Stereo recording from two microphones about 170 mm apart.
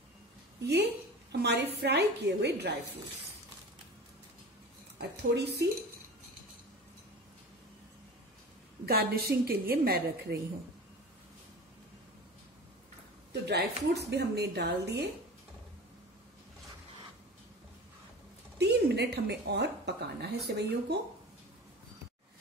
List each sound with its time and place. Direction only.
0.6 s a woman's voice: 75° right (ahead or behind)
5.1 s speech: 80° right
8.8 s a woman's voice: 65° right (ahead or behind)
13.3 s a woman's voice: 80° right
18.6 s a woman's voice: 75° right (ahead or behind)